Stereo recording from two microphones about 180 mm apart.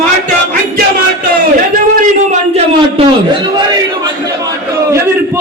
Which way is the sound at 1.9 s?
45° right (ahead or behind).